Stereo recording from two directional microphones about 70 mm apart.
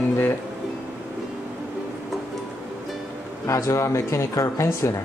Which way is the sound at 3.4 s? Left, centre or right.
Left.